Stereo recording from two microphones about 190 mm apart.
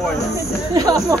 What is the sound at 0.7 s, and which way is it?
Snake, 20° right (ahead or behind).